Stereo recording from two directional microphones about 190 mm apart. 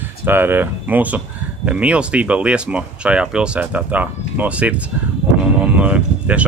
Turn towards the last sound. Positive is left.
turn(degrees=-5)  # may be behind; listen again after turning